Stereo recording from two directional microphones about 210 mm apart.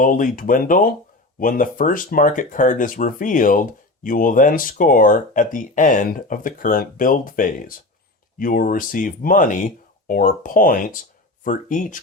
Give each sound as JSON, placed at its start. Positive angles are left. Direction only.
{"t": 0.0, "sound": "speech", "side_deg": 40}